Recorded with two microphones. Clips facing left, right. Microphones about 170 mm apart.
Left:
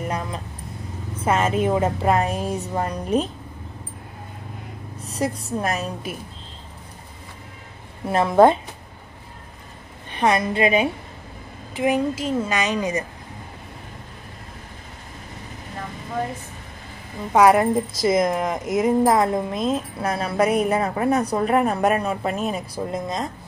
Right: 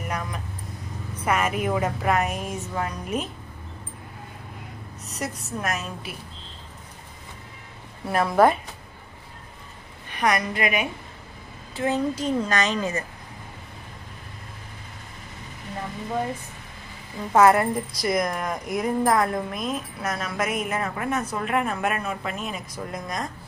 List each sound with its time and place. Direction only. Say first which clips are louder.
0.0 s vehicle: left 4 dB; 25° left (ahead or behind)
1.1 s a woman's voice: left 4 dB; 25° left (ahead or behind)
5.0 s a woman's voice: left 7 dB; 30° left (ahead or behind)
8.1 s a woman's voice: left 4 dB; 25° left (ahead or behind)
10.1 s a woman's voice: left 4 dB; 25° left (ahead or behind)
11.7 s a woman's voice: left 3 dB; 15° left (ahead or behind)
17.3 s a woman's voice: left 2 dB; 15° left (ahead or behind); by 22.8 s 40° left (ahead or behind)
22.8 s a woman's voice: left 3 dB; 25° left (ahead or behind)